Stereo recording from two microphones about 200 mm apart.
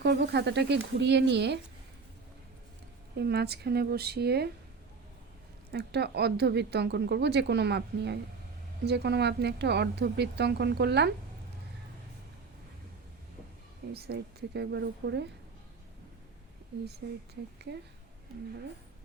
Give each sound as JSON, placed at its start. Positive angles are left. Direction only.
{"t": 0.0, "sound": "speech", "side_deg": -55}
{"t": 3.2, "sound": "speech", "side_deg": -55}
{"t": 5.7, "sound": "speech", "side_deg": -55}
{"t": 13.9, "sound": "speech", "side_deg": -55}